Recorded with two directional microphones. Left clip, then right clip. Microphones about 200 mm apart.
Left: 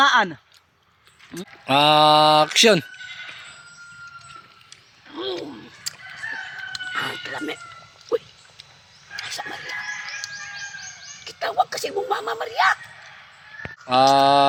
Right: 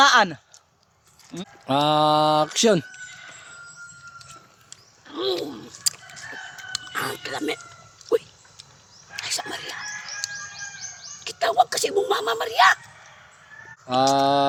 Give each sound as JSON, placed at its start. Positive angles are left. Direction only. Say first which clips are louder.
{"t": 0.0, "sound": "speech", "louder": "right 1 dB", "side_deg": -20}
{"t": 1.6, "sound": "mantra", "louder": "left 4 dB", "side_deg": -5}
{"t": 5.0, "sound": "a sound", "louder": "right 3 dB", "side_deg": -25}
{"t": 6.7, "sound": "speech", "louder": "left 1 dB", "side_deg": -25}
{"t": 8.1, "sound": "a sound", "louder": "right 2 dB", "side_deg": -25}
{"t": 9.2, "sound": "speech", "louder": "right 2 dB", "side_deg": -30}
{"t": 10.2, "sound": "bird", "louder": "right 1 dB", "side_deg": 35}
{"t": 11.2, "sound": "speech", "louder": "right 3 dB", "side_deg": -30}
{"t": 13.8, "sound": "a sound", "louder": "left 4 dB", "side_deg": 0}